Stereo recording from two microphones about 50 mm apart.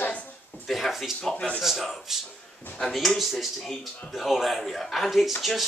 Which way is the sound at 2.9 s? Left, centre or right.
Centre.